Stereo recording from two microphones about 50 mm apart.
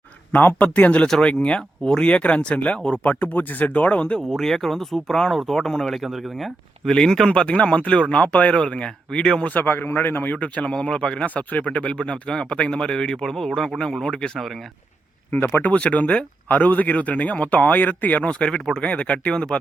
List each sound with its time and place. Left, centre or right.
0.3 s speech: left
1.2 s speech: left
3.0 s speech: left
4.3 s speech: centre
6.0 s speech: centre
6.9 s speech: centre
9.4 s speech: left
10.3 s speech: left
15.6 s speech: left